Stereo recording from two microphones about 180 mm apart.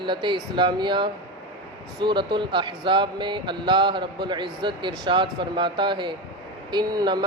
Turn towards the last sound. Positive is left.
turn(degrees=-25)  # may be behind; listen again after turning